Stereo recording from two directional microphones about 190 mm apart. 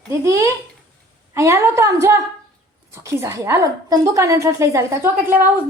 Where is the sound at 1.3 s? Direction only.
15° right (ahead or behind).